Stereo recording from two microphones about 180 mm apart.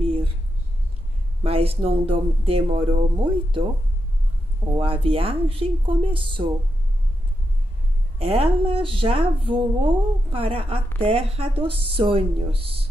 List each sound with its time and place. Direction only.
0.0 s a sound: 30° right (ahead or behind)
1.4 s speech: 35° right (ahead or behind)
4.7 s speech: 30° right (ahead or behind)
8.2 s speech: 30° right (ahead or behind)